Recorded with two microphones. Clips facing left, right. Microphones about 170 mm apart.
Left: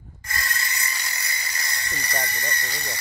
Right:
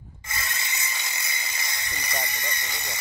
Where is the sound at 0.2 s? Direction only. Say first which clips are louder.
Left 3 dB; 20° right (ahead or behind).